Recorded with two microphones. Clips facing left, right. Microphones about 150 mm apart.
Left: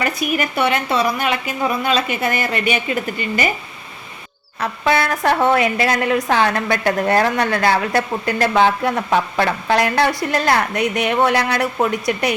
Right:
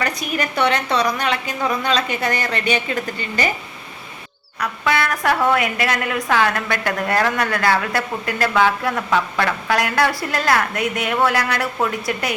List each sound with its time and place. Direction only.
0.0 s a woman's voice: 10° left (ahead or behind)
4.6 s a woman's voice: 30° left (ahead or behind)